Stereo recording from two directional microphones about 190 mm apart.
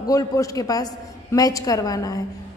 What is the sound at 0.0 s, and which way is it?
A man's voice, 15° left (ahead or behind).